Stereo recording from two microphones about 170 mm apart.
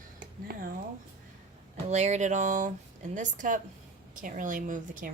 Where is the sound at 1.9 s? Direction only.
40° right (ahead or behind).